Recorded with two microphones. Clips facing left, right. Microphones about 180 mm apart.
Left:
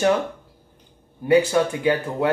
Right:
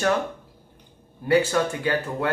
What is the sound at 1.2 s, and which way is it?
Speech, 15° left (ahead or behind).